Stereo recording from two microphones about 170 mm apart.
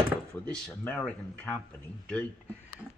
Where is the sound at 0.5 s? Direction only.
10° left (ahead or behind).